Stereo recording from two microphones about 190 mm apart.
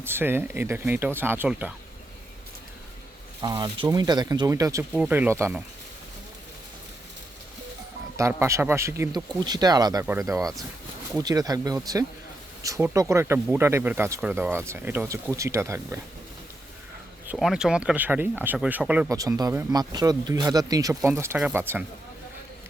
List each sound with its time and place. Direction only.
0.0 s speech: 10° right (ahead or behind)
3.4 s speech: 20° right (ahead or behind)
8.1 s speech: 15° right (ahead or behind)
17.3 s speech: centre (ahead or behind)